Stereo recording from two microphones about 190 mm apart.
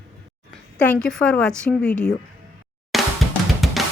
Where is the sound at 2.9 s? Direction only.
Centre (ahead or behind).